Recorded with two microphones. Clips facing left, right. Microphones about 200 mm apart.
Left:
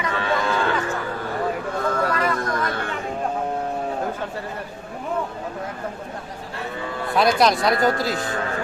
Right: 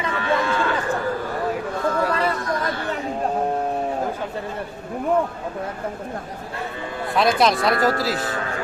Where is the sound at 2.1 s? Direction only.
30° right (ahead or behind).